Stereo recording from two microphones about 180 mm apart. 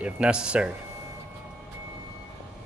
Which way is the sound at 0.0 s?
5° right (ahead or behind).